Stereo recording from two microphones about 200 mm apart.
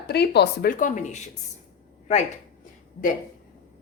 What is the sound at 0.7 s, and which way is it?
Speech, 40° left (ahead or behind).